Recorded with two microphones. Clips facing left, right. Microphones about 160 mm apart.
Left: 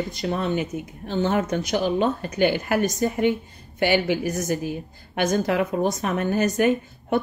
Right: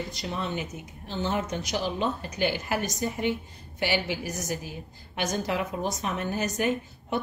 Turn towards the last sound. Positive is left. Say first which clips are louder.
# left 6 dB
turn(degrees=55)  # may be behind; listen again after turning